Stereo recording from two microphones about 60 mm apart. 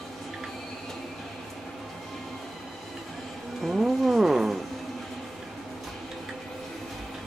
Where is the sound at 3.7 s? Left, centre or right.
Centre.